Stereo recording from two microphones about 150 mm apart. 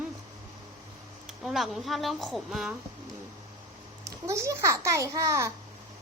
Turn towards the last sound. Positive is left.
turn(degrees=-20)  # may be behind; listen again after turning